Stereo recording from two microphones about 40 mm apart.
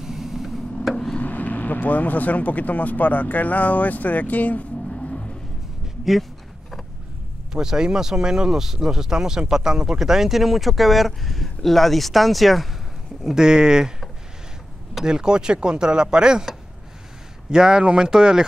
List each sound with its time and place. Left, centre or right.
0.0 s tick-tock: centre
1.2 s speech: left
4.9 s vehicle: left
7.5 s speech: centre
13.2 s speech: centre
15.0 s speech: centre
17.5 s speech: centre